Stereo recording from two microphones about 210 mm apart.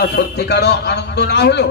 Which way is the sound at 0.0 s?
50° left (ahead or behind).